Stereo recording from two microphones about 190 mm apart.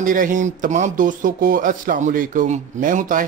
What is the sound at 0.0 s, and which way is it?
Speech, 45° right (ahead or behind).